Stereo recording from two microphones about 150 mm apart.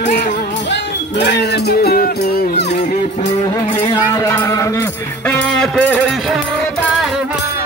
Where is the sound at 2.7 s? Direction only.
50° left (ahead or behind).